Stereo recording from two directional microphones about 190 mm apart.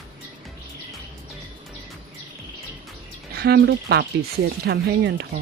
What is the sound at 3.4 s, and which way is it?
Speech, 60° right (ahead or behind).